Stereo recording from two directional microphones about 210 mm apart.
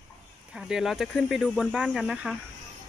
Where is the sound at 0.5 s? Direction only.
Centre (ahead or behind).